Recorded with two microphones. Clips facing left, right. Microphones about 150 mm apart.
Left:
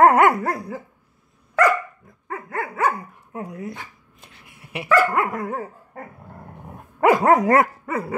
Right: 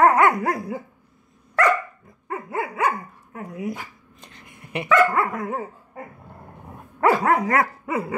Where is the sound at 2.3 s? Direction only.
15° right (ahead or behind).